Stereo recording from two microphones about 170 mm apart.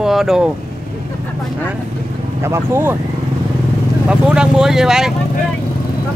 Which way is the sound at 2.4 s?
15° right (ahead or behind).